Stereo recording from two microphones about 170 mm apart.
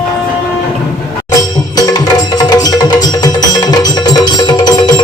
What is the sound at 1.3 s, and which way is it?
Music, 20° left (ahead or behind).